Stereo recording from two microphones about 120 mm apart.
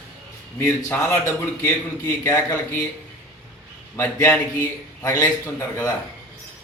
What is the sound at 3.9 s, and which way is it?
A man's voice, 25° left (ahead or behind).